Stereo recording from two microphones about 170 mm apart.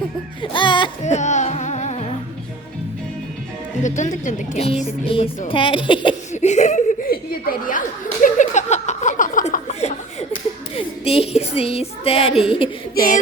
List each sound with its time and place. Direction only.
0.4 s music: 30° left (ahead or behind)
1.0 s music: 45° left (ahead or behind)
3.8 s speech: 45° left (ahead or behind); by 6.1 s 30° left (ahead or behind)
6.3 s giggle: 45° left (ahead or behind)
7.7 s chuckle: 50° left (ahead or behind)
10.8 s speech: 35° left (ahead or behind)